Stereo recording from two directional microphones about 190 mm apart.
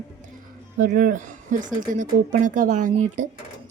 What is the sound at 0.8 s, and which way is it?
Speech, 45° right (ahead or behind).